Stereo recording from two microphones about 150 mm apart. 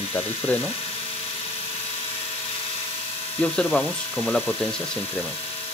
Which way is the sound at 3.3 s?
10° left (ahead or behind).